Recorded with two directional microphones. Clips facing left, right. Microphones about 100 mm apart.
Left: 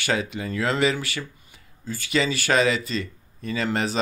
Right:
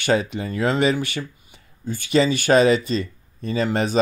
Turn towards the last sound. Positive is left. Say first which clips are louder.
# right 4 dB
turn(degrees=-25)  # may be behind; listen again after turning